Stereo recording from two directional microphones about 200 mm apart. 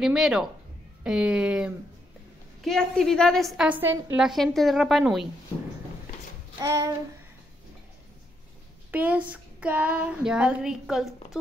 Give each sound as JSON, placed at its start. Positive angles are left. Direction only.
{"t": 0.0, "sound": "a woman's voice", "side_deg": -5}
{"t": 6.6, "sound": "child singing", "side_deg": -15}
{"t": 8.9, "sound": "a woman's voice", "side_deg": -5}